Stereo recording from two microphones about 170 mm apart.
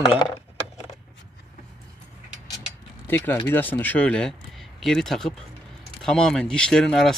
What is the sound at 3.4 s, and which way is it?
Speech, 10° left (ahead or behind).